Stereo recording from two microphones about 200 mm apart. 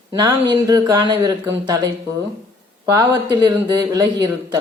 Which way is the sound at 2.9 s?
20° right (ahead or behind).